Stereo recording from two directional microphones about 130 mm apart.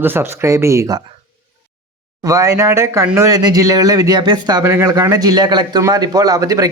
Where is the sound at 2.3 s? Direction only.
25° right (ahead or behind).